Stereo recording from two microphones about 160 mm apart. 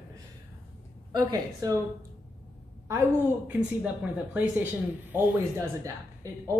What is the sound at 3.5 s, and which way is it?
Speech, 10° right (ahead or behind).